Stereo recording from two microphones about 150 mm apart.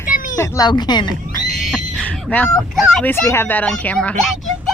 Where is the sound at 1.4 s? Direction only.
Centre (ahead or behind).